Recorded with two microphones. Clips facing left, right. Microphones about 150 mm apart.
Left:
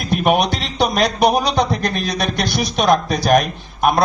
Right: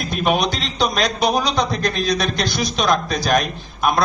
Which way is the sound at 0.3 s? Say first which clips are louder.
Left 2 dB; 60° left (ahead or behind).